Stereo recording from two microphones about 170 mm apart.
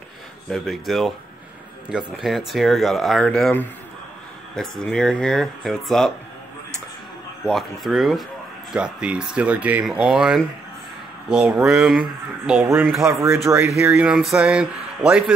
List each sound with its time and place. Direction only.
0.5 s speech: centre (ahead or behind)
7.4 s speech: centre (ahead or behind)
13.0 s speech: 15° right (ahead or behind)